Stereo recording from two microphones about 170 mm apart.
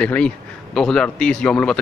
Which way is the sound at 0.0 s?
5° left (ahead or behind).